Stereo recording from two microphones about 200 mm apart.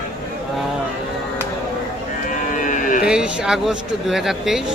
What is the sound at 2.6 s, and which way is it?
Livestock, 40° left (ahead or behind).